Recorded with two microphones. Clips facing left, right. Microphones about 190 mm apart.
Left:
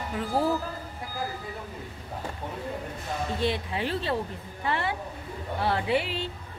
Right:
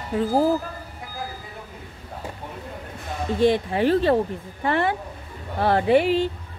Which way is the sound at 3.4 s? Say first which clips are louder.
Right 12 dB; 50° right (ahead or behind).